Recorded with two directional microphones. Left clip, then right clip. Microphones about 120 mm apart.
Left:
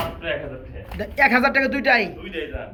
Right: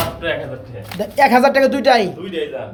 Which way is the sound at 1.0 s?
20° right (ahead or behind).